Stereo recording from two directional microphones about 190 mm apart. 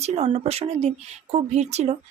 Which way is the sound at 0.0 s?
35° right (ahead or behind).